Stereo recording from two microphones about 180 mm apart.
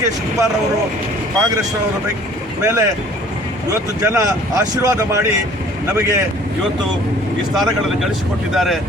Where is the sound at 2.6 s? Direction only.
15° right (ahead or behind).